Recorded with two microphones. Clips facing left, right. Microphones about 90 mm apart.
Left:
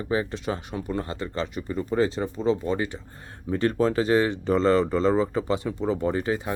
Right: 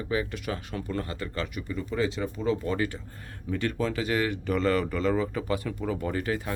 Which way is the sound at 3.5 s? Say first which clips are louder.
Left 6 dB; 35° left (ahead or behind).